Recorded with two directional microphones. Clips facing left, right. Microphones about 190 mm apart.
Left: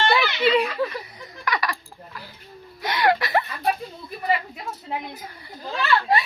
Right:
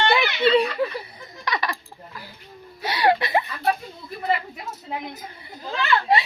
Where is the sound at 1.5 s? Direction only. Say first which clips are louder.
Left 1 dB; 25° right (ahead or behind).